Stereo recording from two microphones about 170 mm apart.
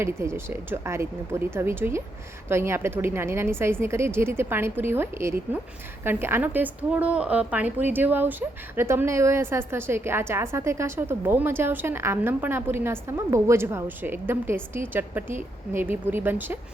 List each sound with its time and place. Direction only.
0.0 s a woman's voice: 15° right (ahead or behind)